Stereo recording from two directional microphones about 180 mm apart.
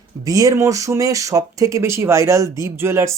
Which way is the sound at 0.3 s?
20° right (ahead or behind).